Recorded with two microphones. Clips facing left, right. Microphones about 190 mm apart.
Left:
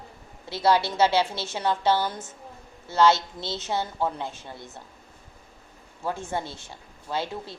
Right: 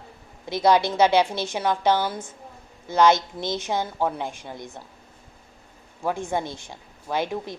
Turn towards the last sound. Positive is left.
turn(degrees=-15)  # may be behind; listen again after turning